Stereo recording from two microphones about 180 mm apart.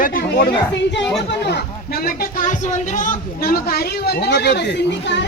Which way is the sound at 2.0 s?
45° left (ahead or behind).